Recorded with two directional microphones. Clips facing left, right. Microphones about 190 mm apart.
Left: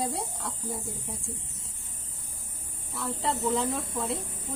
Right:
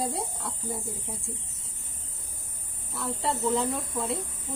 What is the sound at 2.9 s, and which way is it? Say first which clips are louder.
Speech: even; centre (ahead or behind).